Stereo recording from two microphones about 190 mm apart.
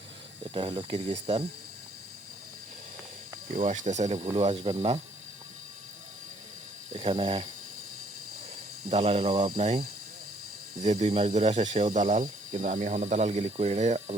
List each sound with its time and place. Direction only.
0.5 s speech: 25° right (ahead or behind)
3.5 s speech: 40° right (ahead or behind)
6.9 s speech: 30° right (ahead or behind)
8.9 s speech: 30° right (ahead or behind)
10.8 s speech: 35° right (ahead or behind)